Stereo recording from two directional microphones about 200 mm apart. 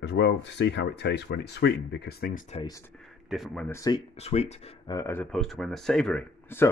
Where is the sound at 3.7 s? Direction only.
20° left (ahead or behind).